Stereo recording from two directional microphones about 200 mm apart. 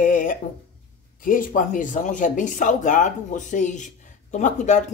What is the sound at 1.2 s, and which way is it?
Speech, 40° left (ahead or behind).